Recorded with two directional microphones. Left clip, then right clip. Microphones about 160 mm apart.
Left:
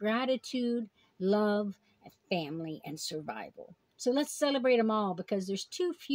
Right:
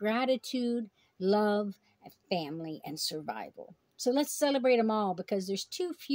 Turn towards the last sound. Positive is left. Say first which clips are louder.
# left 1 dB
turn(degrees=0)  # may be behind; listen again after turning